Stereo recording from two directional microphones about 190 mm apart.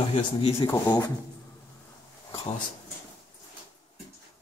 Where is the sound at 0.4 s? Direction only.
30° left (ahead or behind).